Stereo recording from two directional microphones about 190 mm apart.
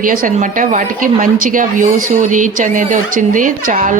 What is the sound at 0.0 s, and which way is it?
A woman's voice, 45° right (ahead or behind).